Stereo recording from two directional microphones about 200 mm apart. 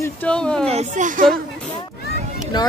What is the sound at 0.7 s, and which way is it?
Speech, 35° right (ahead or behind).